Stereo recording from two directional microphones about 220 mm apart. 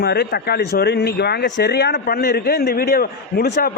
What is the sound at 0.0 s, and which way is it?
Speech, 50° left (ahead or behind).